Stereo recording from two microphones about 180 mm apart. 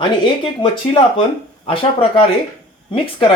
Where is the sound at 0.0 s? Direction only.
25° left (ahead or behind).